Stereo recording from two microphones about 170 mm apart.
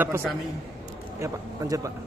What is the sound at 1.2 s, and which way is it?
Speech, 20° right (ahead or behind).